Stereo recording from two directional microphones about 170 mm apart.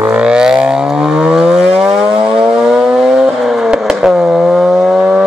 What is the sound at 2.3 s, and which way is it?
Vehicle, 5° right (ahead or behind).